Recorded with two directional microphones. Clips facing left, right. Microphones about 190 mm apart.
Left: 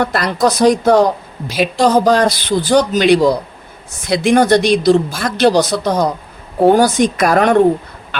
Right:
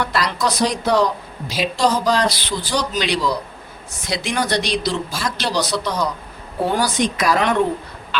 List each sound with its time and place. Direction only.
0.0 s a woman's voice: 50° left (ahead or behind)